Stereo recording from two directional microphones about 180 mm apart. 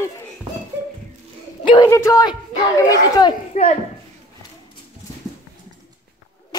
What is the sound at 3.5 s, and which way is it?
Speech, 40° left (ahead or behind).